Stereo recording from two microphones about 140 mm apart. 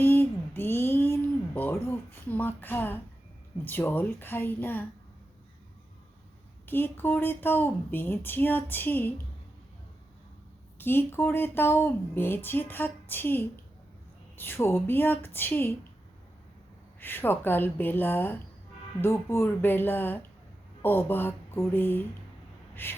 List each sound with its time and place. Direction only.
0.0 s a sound: 15° left (ahead or behind)
3.6 s speech: 15° left (ahead or behind)
6.7 s speech: 15° left (ahead or behind)
10.8 s speech: 15° left (ahead or behind)
17.0 s speech: 15° left (ahead or behind)
22.7 s a sound: 15° left (ahead or behind)